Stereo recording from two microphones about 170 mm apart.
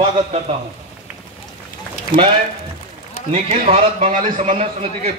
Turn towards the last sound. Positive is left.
turn(degrees=-40)  # may be behind; listen again after turning